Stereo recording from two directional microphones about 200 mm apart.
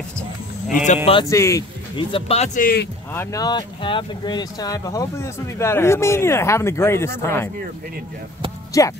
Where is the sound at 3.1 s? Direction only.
15° left (ahead or behind).